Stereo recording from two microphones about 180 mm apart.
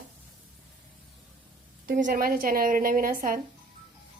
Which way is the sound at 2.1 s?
55° right (ahead or behind).